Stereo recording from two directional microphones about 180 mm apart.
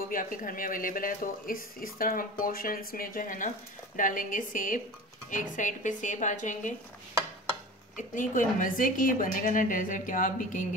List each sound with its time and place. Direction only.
0.1 s speech: 50° left (ahead or behind)
7.9 s speech: 45° left (ahead or behind)